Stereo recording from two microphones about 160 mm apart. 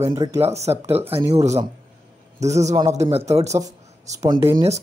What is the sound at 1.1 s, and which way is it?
Speech, 40° right (ahead or behind).